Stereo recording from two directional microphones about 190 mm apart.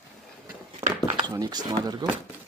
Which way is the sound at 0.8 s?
20° right (ahead or behind).